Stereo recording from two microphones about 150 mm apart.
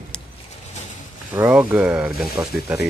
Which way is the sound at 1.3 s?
10° right (ahead or behind).